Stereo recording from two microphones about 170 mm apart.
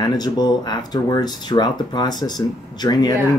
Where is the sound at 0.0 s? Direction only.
25° left (ahead or behind).